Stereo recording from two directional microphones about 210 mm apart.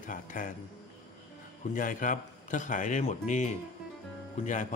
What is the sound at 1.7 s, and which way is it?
A man's voice, 40° left (ahead or behind).